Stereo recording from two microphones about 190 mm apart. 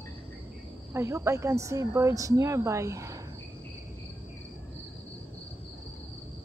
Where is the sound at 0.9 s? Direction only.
15° right (ahead or behind).